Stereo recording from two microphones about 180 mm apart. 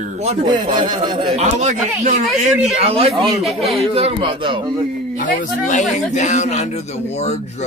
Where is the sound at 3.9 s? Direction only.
35° right (ahead or behind).